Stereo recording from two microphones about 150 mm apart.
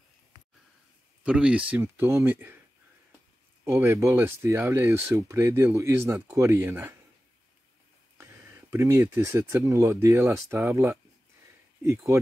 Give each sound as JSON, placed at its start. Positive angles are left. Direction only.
{"t": 1.2, "sound": "speech", "side_deg": -5}
{"t": 3.6, "sound": "speech", "side_deg": -15}
{"t": 8.2, "sound": "speech", "side_deg": -20}